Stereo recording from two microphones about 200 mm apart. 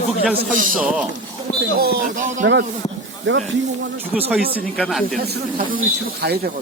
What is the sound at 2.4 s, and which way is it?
Speech, 60° right (ahead or behind).